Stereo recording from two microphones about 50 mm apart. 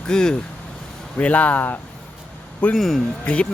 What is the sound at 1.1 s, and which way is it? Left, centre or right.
Speech, left.